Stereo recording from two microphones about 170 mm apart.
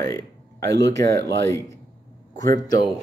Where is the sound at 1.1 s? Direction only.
80° right.